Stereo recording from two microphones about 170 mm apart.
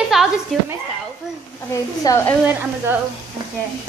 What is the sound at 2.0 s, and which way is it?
Speech, 20° left (ahead or behind).